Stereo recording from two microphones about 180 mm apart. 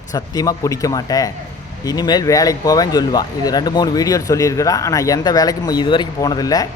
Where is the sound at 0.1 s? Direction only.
20° left (ahead or behind).